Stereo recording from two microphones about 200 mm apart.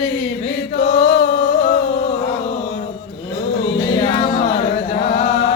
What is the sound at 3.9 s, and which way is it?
Chant, 30° left (ahead or behind).